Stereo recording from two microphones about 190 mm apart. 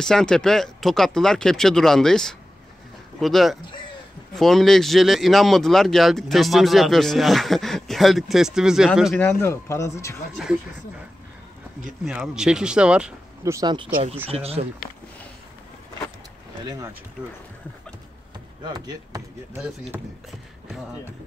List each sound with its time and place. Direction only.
0.0 s speech: 5° left (ahead or behind)
9.2 s speech: 10° left (ahead or behind)
10.4 s speech: 5° right (ahead or behind)
12.0 s speech: 5° right (ahead or behind)
13.4 s speech: 15° right (ahead or behind)
14.3 s speech: 30° right (ahead or behind)
16.6 s speech: 20° right (ahead or behind)
18.6 s speech: 20° right (ahead or behind)
19.6 s speech: 5° right (ahead or behind)